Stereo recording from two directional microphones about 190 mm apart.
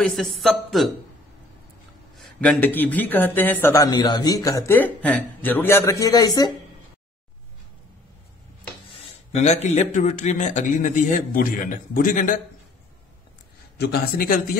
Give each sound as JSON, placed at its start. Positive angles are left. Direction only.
{"t": 0.0, "sound": "speech", "side_deg": 0}
{"t": 2.1, "sound": "speech", "side_deg": 5}
{"t": 9.3, "sound": "a man's voice", "side_deg": 35}
{"t": 13.7, "sound": "a man's voice", "side_deg": 55}